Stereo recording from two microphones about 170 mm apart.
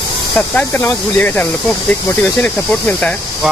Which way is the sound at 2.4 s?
10° left (ahead or behind).